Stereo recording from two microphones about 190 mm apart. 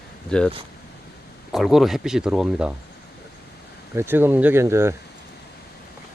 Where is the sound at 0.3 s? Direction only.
5° left (ahead or behind).